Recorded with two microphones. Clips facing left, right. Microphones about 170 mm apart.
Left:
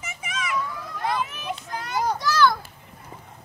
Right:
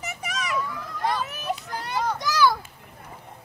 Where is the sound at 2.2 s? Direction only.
15° right (ahead or behind).